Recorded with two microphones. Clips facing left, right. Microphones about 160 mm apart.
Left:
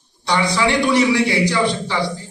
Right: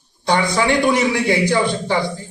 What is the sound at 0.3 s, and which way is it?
A man's voice, 50° right (ahead or behind).